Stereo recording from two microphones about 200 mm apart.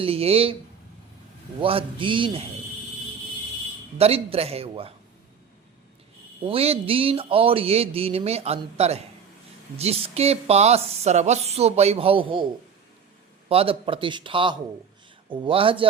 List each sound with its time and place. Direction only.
0.0 s speech: 30° right (ahead or behind)
1.6 s speech: 25° right (ahead or behind)
3.9 s speech: 30° right (ahead or behind)
6.4 s speech: 30° right (ahead or behind)
13.5 s speech: 30° right (ahead or behind)